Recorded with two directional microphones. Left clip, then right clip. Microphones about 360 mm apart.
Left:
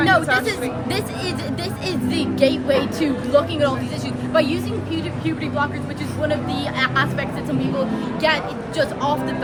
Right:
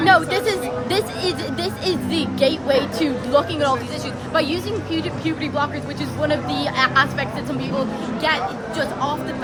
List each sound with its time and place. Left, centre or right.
0.0 s speech: centre
6.2 s speech: centre